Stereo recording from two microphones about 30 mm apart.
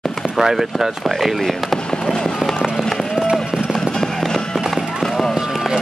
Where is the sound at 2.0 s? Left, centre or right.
Left.